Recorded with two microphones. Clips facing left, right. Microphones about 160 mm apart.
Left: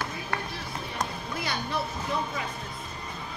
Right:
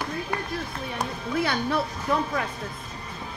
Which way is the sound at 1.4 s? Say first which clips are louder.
Right 7 dB; 60° right (ahead or behind).